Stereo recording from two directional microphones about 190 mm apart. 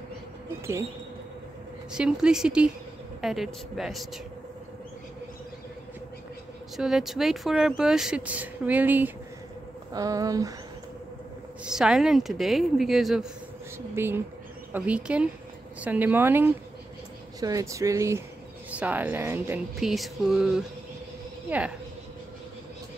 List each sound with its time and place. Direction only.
1.9 s speech: 5° right (ahead or behind)
6.8 s speech: centre (ahead or behind); by 10.5 s 20° right (ahead or behind)
11.6 s speech: 5° right (ahead or behind)
13.9 s speech: 10° right (ahead or behind)
19.8 s speech: centre (ahead or behind)